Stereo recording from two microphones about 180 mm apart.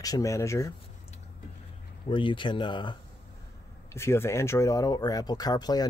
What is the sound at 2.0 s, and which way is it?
Speech, 25° left (ahead or behind).